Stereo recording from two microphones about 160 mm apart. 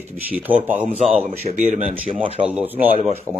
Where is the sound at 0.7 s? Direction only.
45° right (ahead or behind).